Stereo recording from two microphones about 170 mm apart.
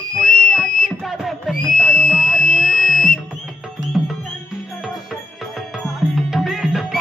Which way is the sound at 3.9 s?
Centre (ahead or behind).